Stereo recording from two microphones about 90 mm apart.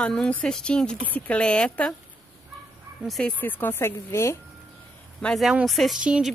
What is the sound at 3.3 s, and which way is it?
Speech, 20° left (ahead or behind).